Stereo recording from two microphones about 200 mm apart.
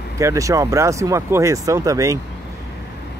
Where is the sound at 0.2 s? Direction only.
15° right (ahead or behind).